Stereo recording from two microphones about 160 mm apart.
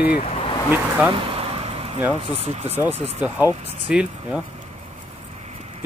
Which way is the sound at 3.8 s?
5° right (ahead or behind).